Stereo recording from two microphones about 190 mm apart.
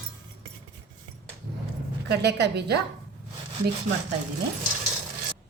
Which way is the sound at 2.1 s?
60° right (ahead or behind).